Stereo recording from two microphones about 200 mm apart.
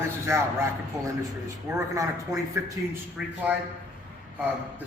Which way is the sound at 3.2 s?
5° right (ahead or behind).